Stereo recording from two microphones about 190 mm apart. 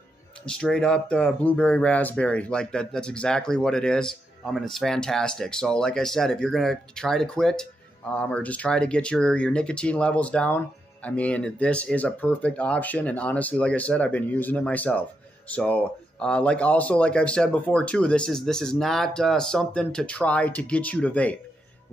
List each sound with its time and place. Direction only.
0.5 s speech: 5° left (ahead or behind)